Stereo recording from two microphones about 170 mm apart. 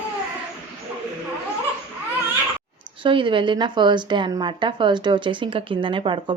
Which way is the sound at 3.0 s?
30° right (ahead or behind).